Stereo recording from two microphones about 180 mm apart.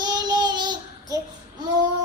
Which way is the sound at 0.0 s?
20° right (ahead or behind).